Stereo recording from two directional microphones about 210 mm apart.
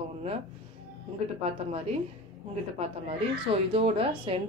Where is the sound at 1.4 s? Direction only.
30° right (ahead or behind).